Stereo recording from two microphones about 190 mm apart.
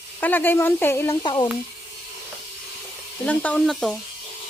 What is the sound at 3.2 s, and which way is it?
Speech, 5° left (ahead or behind).